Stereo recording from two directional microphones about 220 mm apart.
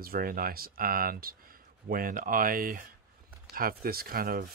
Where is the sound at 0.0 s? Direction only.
40° right (ahead or behind).